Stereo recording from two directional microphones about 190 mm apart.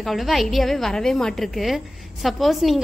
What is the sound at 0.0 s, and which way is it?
A woman's voice, centre (ahead or behind).